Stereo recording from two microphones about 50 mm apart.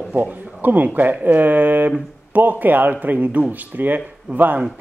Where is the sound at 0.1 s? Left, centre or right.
Right.